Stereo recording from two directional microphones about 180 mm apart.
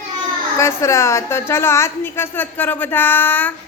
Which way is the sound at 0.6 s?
15° left (ahead or behind).